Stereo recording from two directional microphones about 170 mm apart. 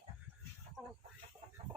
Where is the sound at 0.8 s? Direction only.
Centre (ahead or behind).